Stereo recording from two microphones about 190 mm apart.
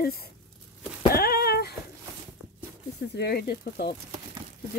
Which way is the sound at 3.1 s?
55° left (ahead or behind).